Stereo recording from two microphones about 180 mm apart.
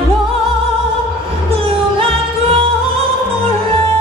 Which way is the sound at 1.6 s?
30° right (ahead or behind).